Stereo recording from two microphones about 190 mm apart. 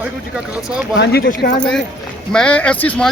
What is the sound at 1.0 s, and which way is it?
Speech, 55° left (ahead or behind).